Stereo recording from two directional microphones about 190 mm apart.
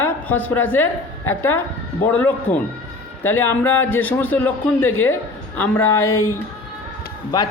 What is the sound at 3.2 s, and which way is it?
A man's voice, 10° left (ahead or behind).